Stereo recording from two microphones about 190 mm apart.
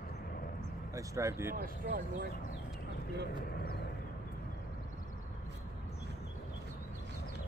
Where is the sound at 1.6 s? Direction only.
45° right (ahead or behind).